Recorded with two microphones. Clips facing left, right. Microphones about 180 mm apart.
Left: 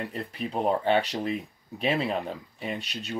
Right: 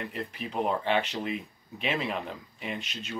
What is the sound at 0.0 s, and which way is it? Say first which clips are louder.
Speech: left 3 dB; 30° left (ahead or behind).